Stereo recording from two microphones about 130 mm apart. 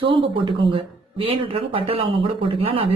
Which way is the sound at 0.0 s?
40° right (ahead or behind).